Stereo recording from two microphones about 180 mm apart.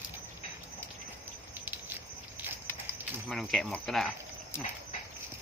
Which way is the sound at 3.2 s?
Centre (ahead or behind).